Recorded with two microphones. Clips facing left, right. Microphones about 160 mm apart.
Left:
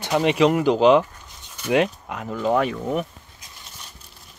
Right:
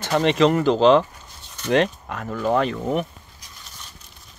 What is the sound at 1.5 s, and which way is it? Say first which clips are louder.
Speech: right 1 dB; 10° left (ahead or behind).